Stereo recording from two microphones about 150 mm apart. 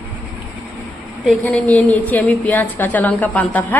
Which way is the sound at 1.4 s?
10° left (ahead or behind).